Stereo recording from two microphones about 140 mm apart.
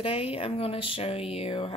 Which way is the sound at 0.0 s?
45° left (ahead or behind).